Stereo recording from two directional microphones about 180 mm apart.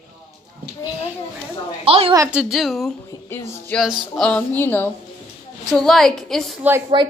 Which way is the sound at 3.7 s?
Centre (ahead or behind).